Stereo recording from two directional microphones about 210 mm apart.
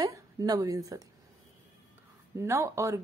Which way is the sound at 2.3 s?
15° right (ahead or behind).